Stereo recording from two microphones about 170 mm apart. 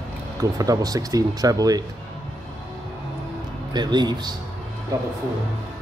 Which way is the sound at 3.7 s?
25° right (ahead or behind).